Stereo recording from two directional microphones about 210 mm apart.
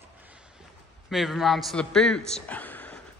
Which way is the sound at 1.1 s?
Centre (ahead or behind).